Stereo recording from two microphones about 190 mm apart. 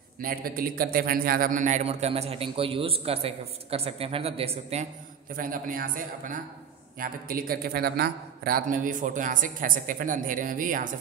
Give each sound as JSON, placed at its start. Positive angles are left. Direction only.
{"t": 0.2, "sound": "a man's voice", "side_deg": -50}
{"t": 5.3, "sound": "a man's voice", "side_deg": -45}